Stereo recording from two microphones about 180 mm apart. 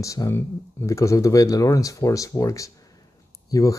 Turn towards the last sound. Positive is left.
turn(degrees=20)  # may be behind; listen again after turning